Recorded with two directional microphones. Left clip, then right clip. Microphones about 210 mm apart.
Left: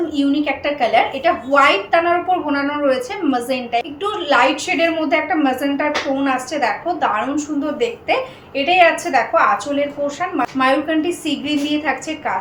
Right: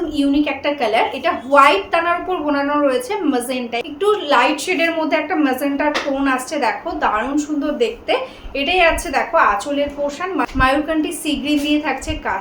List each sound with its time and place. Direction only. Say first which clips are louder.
0.2 s a woman's voice: right 2 dB; 25° right (ahead or behind)